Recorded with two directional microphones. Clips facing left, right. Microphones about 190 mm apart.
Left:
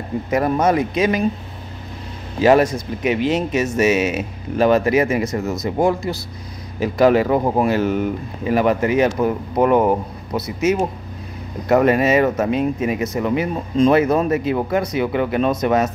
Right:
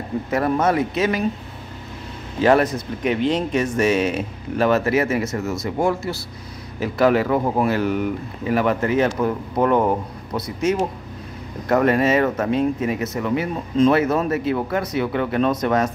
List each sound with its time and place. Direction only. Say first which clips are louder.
0.3 s speech: left 2 dB; 15° left (ahead or behind)
2.4 s speech: left 3 dB; 10° left (ahead or behind)